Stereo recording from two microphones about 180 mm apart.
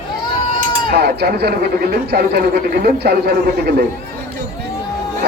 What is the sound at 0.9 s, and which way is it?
A man's voice, 65° right (ahead or behind).